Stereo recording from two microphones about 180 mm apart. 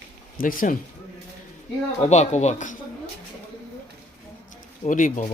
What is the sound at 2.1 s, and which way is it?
Speech, 40° left (ahead or behind).